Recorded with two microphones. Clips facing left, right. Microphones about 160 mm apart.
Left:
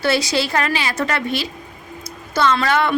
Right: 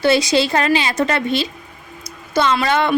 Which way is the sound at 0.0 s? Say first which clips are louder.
Right 4 dB; 20° right (ahead or behind).